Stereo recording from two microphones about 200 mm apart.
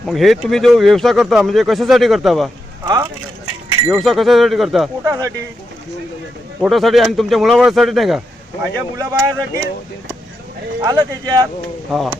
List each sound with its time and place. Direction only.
0.1 s speech: centre (ahead or behind)
2.8 s speech: 15° right (ahead or behind)
3.9 s speech: centre (ahead or behind)
5.0 s speech: 15° right (ahead or behind)
6.6 s speech: centre (ahead or behind)
8.6 s speech: 15° right (ahead or behind)
10.8 s speech: 20° right (ahead or behind)
11.9 s speech: centre (ahead or behind)